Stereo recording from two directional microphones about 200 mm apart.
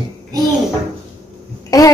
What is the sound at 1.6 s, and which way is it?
Speech, 15° left (ahead or behind).